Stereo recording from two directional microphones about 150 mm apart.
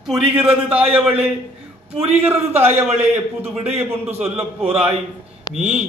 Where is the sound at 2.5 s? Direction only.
45° right (ahead or behind).